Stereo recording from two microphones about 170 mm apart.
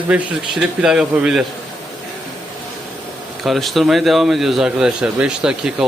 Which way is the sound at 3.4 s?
Centre (ahead or behind).